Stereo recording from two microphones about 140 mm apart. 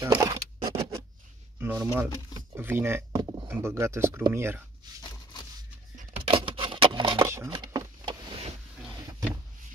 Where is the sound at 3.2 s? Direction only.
30° right (ahead or behind).